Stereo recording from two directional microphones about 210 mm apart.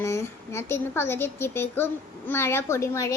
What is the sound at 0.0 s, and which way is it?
A woman's voice, 15° left (ahead or behind).